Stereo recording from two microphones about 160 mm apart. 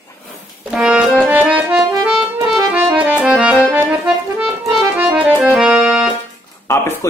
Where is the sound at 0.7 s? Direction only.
5° right (ahead or behind).